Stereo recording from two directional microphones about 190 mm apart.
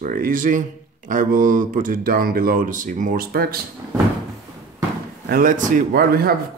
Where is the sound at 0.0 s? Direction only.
45° right (ahead or behind).